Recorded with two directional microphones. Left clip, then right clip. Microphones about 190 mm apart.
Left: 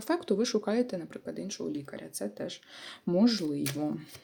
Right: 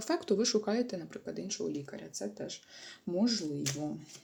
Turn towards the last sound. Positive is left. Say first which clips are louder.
# left 4 dB
turn(degrees=35)  # may be behind; listen again after turning